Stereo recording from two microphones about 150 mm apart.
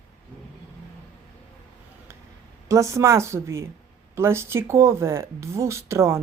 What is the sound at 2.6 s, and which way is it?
Speech, 20° right (ahead or behind).